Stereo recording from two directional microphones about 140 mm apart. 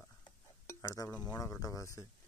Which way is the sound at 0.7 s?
20° left (ahead or behind).